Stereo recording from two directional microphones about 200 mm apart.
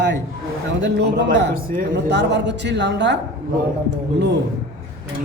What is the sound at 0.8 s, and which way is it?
Speech, 60° right (ahead or behind).